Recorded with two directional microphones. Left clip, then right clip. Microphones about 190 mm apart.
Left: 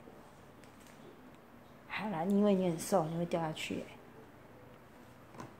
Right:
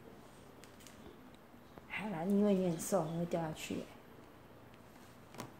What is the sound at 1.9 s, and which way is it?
A woman's voice, 10° left (ahead or behind).